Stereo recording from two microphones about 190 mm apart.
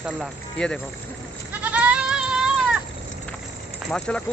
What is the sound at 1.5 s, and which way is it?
Goat, 10° right (ahead or behind).